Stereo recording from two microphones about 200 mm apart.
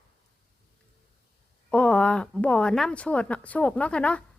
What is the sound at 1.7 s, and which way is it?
A woman's voice, 5° left (ahead or behind).